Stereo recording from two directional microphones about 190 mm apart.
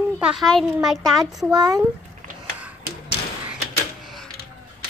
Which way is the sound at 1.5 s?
20° right (ahead or behind).